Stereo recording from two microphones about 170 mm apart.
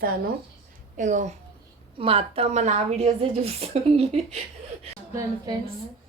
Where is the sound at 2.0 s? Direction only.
35° right (ahead or behind).